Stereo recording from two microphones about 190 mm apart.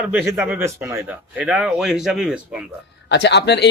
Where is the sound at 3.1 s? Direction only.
60° left (ahead or behind).